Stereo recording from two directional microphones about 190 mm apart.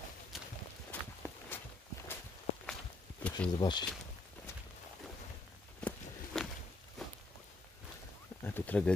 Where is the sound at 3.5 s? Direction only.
20° left (ahead or behind).